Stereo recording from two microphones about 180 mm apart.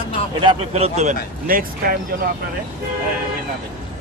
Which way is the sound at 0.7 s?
40° right (ahead or behind).